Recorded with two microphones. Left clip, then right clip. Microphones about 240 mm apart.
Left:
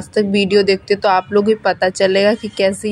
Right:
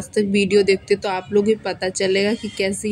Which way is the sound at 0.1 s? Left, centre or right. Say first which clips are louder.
Left 3 dB; centre.